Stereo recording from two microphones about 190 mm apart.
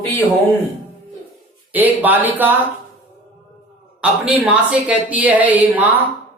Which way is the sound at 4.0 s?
5° right (ahead or behind).